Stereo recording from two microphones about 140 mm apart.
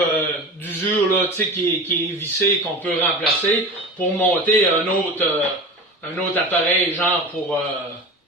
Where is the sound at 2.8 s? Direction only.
10° left (ahead or behind).